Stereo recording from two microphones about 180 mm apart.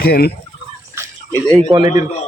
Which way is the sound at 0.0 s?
60° left (ahead or behind).